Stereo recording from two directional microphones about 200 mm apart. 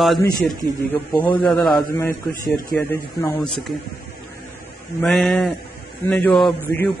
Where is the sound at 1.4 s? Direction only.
5° left (ahead or behind).